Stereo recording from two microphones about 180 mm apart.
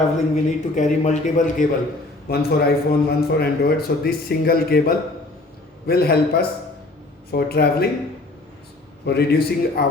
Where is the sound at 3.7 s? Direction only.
60° left (ahead or behind).